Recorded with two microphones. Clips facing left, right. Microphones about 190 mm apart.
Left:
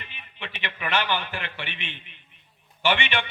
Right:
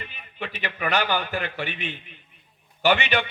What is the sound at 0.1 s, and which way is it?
A man's voice, 40° right (ahead or behind).